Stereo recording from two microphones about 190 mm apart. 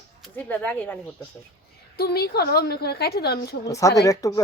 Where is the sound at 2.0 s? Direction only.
55° left (ahead or behind).